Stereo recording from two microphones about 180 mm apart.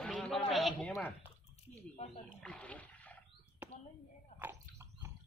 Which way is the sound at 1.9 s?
35° left (ahead or behind).